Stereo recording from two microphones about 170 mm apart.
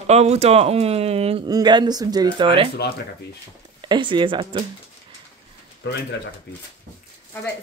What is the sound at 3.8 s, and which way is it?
Speech, 25° right (ahead or behind).